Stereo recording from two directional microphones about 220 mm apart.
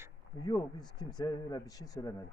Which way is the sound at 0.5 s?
20° left (ahead or behind).